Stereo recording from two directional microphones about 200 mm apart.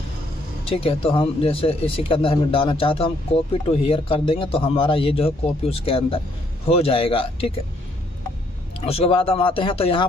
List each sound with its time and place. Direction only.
0.7 s speech: 30° left (ahead or behind)
8.8 s speech: 30° left (ahead or behind)